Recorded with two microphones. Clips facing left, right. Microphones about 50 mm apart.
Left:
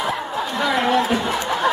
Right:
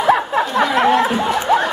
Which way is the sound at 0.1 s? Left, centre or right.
Right.